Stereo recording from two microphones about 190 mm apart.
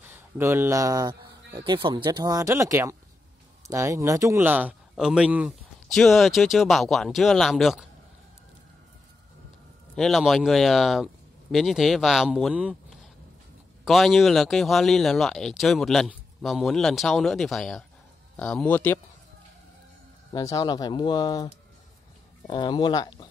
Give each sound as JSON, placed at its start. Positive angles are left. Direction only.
{"t": 0.0, "sound": "a man's voice", "side_deg": -10}
{"t": 9.9, "sound": "speech", "side_deg": 0}
{"t": 20.3, "sound": "speech", "side_deg": 20}
{"t": 22.5, "sound": "speech", "side_deg": 25}